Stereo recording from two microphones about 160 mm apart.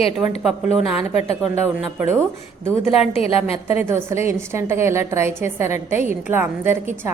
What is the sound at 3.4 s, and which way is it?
Speech, 40° left (ahead or behind).